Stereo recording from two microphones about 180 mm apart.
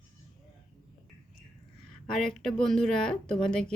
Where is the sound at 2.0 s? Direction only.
5° left (ahead or behind).